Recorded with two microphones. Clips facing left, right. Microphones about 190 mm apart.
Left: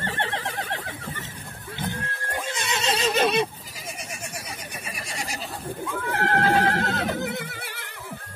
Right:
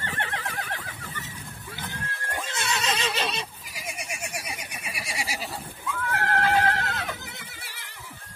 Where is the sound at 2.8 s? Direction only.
35° left (ahead or behind); by 3.4 s 50° left (ahead or behind).